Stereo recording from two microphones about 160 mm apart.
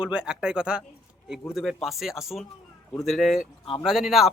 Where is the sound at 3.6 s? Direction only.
35° left (ahead or behind).